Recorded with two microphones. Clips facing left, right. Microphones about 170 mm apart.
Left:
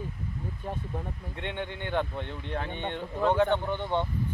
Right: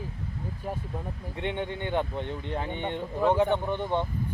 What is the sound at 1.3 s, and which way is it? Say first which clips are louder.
Speech: right 4 dB; 15° right (ahead or behind).